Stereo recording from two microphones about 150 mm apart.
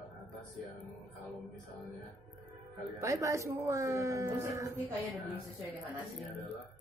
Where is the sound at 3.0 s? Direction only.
20° right (ahead or behind).